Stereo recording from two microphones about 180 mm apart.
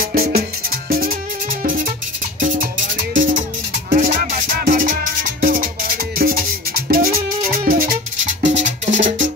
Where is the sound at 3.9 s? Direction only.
45° right (ahead or behind).